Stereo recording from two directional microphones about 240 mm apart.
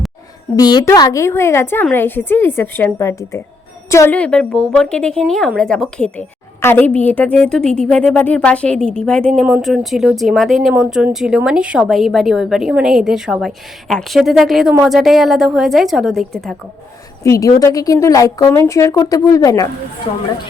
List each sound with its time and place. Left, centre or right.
0.5 s a woman's voice: centre
17.2 s a woman's voice: centre